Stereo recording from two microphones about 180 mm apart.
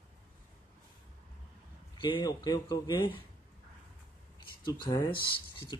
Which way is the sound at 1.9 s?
25° left (ahead or behind).